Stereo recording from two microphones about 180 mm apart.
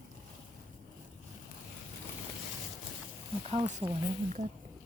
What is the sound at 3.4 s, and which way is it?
Speech, 35° right (ahead or behind).